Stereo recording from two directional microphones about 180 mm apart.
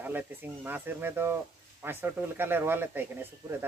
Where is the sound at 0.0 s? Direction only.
10° right (ahead or behind).